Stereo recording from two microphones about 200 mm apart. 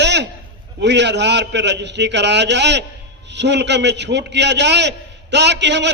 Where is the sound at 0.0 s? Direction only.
60° right (ahead or behind).